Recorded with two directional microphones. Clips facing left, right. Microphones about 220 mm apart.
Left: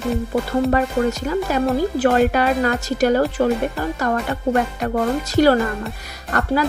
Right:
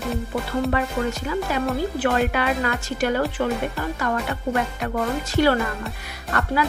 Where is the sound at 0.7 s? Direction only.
40° left (ahead or behind).